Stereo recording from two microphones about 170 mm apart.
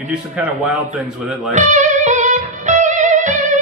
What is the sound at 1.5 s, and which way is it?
Music, 45° right (ahead or behind).